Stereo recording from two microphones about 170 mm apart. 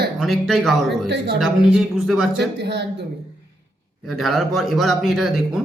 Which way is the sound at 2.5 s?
85° right.